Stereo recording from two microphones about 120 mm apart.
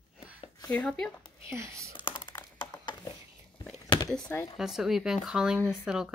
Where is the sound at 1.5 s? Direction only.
25° right (ahead or behind).